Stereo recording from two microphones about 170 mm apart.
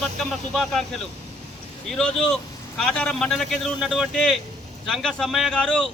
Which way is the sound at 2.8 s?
5° left (ahead or behind).